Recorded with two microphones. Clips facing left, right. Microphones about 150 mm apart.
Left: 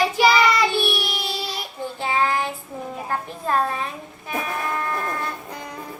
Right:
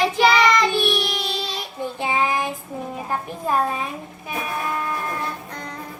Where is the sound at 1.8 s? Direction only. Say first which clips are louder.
Even; 15° right (ahead or behind).